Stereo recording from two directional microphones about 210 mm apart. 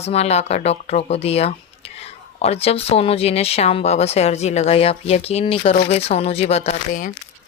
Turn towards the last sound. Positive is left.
turn(degrees=40)  # may be behind; listen again after turning